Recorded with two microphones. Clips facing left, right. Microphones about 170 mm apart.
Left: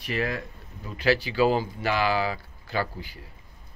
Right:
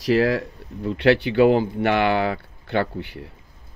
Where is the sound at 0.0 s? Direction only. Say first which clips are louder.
Right 10 dB; 90° right.